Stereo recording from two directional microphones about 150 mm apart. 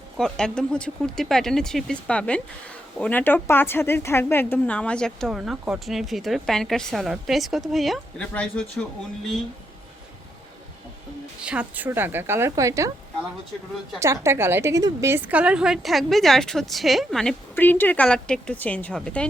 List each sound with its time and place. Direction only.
0.2 s a woman's voice: 5° left (ahead or behind)
11.3 s a woman's voice: 5° right (ahead or behind)
14.0 s a woman's voice: 20° right (ahead or behind); by 17.3 s 5° left (ahead or behind)
17.5 s speech: 15° left (ahead or behind)